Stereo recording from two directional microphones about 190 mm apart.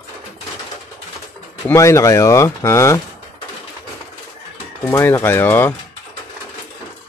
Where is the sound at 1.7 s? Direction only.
15° left (ahead or behind).